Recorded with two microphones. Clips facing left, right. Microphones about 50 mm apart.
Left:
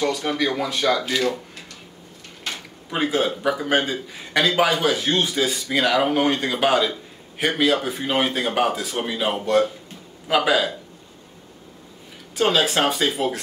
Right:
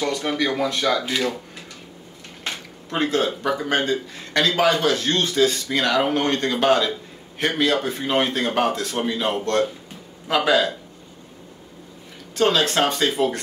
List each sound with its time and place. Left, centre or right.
0.3 s speech: centre
1.0 s speech: centre
2.9 s a man's voice: centre
12.4 s speech: centre